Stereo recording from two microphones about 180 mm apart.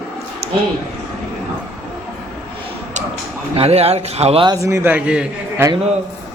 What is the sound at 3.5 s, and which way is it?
A man's voice, 35° right (ahead or behind).